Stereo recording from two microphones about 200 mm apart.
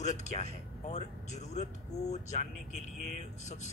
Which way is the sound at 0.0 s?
35° left (ahead or behind).